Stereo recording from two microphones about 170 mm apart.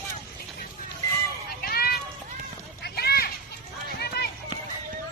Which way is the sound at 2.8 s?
65° left (ahead or behind).